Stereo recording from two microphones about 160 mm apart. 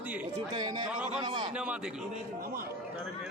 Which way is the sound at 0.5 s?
25° right (ahead or behind).